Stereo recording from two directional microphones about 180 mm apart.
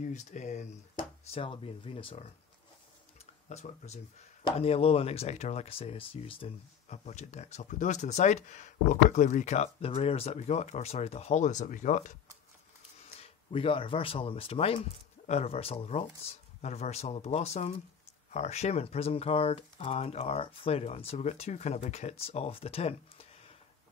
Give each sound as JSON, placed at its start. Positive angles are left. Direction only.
{"t": 0.0, "sound": "speech", "side_deg": 40}
{"t": 0.9, "sound": "speech", "side_deg": 30}
{"t": 3.4, "sound": "speech", "side_deg": 40}
{"t": 13.2, "sound": "speech", "side_deg": 30}